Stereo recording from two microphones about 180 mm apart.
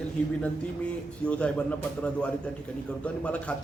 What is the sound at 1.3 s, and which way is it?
Speech, 5° left (ahead or behind).